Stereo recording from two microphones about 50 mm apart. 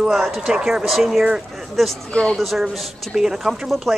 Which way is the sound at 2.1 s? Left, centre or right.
Left.